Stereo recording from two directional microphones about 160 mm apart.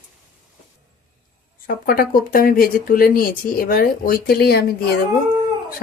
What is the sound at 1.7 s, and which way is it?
Speech, 65° left (ahead or behind).